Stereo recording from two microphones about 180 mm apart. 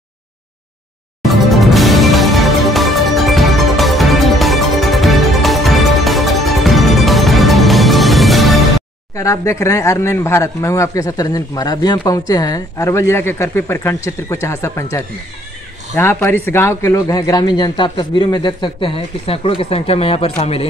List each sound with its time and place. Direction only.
1.2 s music: centre (ahead or behind)
9.1 s speech: 20° left (ahead or behind); by 20.6 s 35° left (ahead or behind)